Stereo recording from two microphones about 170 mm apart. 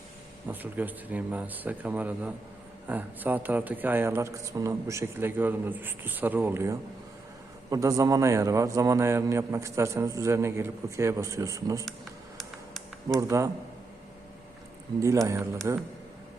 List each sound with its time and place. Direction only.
0.4 s a man's voice: 10° right (ahead or behind)
12.4 s typing: centre (ahead or behind)
13.1 s a man's voice: 15° right (ahead or behind)
15.0 s a man's voice: 20° right (ahead or behind)